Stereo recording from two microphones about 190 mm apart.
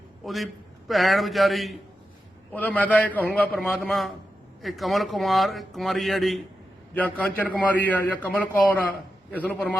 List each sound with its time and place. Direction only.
0.3 s a man's voice: centre (ahead or behind)